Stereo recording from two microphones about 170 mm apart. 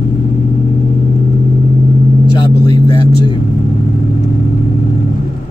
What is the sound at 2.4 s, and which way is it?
Vehicle, 25° left (ahead or behind).